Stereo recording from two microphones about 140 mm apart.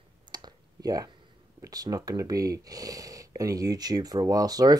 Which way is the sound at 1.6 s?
25° right (ahead or behind).